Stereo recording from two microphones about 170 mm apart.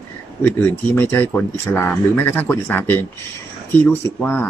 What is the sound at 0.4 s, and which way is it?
Speech, 10° left (ahead or behind).